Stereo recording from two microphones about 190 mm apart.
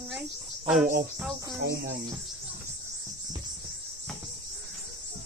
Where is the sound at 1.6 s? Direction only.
60° right (ahead or behind).